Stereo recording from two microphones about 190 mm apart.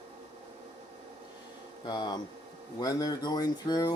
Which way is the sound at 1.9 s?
20° left (ahead or behind).